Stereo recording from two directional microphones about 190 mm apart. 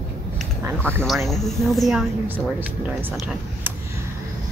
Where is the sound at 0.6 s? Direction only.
10° right (ahead or behind).